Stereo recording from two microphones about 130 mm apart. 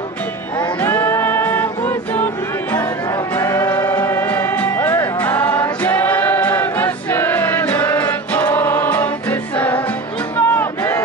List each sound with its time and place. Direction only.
0.8 s music: 15° left (ahead or behind)
3.3 s music: 20° left (ahead or behind)
10.3 s crowd: 15° left (ahead or behind)